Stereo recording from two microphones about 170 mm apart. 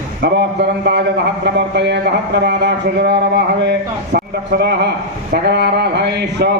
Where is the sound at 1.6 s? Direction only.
85° right.